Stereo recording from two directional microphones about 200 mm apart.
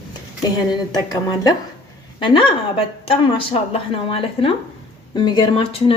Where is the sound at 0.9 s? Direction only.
20° left (ahead or behind).